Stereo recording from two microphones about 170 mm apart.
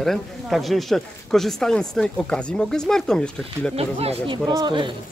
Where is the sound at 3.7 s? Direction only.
35° right (ahead or behind).